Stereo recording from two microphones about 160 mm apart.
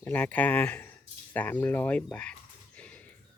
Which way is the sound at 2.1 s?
5° left (ahead or behind).